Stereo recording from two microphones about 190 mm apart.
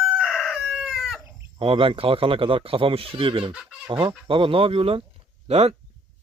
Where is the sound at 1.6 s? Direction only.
30° right (ahead or behind).